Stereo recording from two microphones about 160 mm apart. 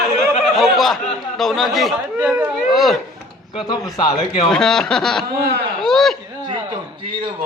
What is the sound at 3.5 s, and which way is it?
Speech, 25° left (ahead or behind).